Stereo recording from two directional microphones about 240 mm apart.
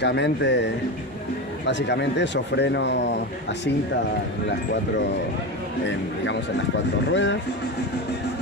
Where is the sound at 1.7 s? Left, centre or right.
Left.